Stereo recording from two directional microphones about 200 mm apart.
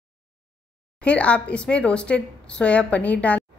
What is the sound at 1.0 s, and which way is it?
A woman's voice, 5° left (ahead or behind).